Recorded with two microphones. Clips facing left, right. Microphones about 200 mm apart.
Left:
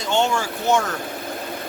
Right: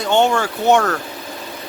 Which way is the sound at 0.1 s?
60° right (ahead or behind).